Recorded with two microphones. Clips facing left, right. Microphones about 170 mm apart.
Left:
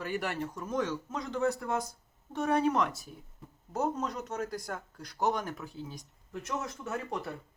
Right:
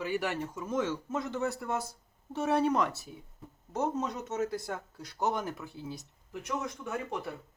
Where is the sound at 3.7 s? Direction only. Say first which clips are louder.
Even; 5° right (ahead or behind).